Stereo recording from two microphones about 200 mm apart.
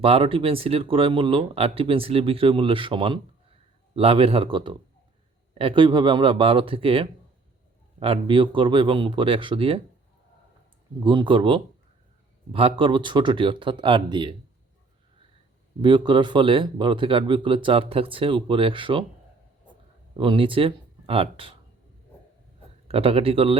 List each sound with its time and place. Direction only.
0.0 s speech: 30° right (ahead or behind)
11.0 s speech: 25° right (ahead or behind)
15.8 s speech: 25° right (ahead or behind)
20.1 s speech: 25° right (ahead or behind)
22.9 s speech: 30° right (ahead or behind)